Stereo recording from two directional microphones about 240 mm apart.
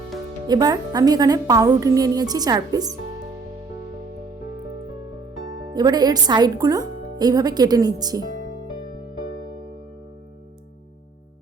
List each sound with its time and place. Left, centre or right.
0.4 s a woman's voice: centre
5.7 s a woman's voice: centre